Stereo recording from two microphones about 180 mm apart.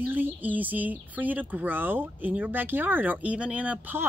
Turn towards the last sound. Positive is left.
turn(degrees=-10)  # may be behind; listen again after turning